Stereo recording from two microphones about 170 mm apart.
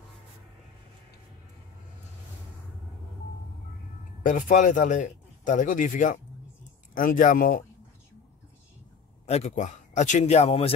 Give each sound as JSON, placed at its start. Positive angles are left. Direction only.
{"t": 4.2, "sound": "a man's voice", "side_deg": 50}
{"t": 9.2, "sound": "a man's voice", "side_deg": 40}